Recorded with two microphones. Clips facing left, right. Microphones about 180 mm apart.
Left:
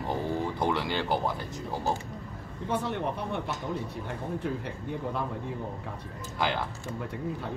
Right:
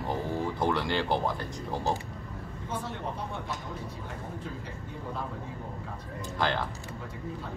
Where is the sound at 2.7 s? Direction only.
65° left (ahead or behind).